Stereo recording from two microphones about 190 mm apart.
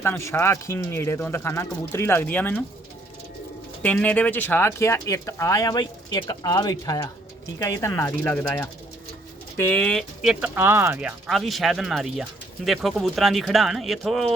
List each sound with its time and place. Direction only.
0.0 s speech: 15° left (ahead or behind)
3.8 s speech: 10° left (ahead or behind)
10.4 s speech: 10° right (ahead or behind)